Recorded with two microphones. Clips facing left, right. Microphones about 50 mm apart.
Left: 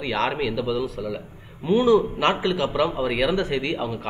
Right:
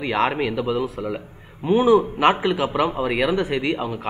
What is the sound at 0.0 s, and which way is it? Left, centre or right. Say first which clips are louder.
A man's voice: right 3 dB; centre.